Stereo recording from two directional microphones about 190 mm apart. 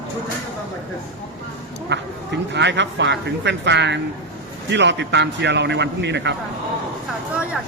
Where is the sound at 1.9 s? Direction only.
65° right (ahead or behind).